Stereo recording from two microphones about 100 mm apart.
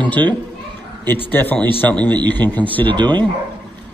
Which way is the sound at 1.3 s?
15° left (ahead or behind).